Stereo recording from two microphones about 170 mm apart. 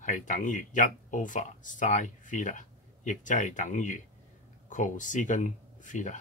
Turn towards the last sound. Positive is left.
turn(degrees=45)  # may be behind; listen again after turning